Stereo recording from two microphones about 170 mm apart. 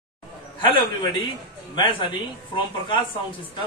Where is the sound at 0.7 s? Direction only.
30° left (ahead or behind).